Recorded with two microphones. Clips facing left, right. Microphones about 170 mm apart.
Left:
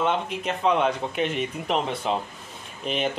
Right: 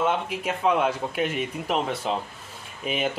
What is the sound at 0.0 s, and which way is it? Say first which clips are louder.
Speech: even; 5° right (ahead or behind).